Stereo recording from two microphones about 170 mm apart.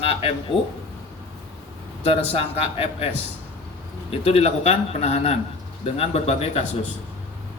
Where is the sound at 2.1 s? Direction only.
35° left (ahead or behind).